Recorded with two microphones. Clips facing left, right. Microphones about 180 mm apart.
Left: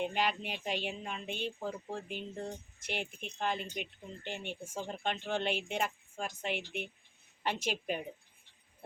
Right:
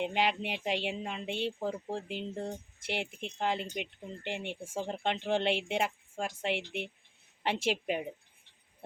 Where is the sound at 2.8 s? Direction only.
85° right.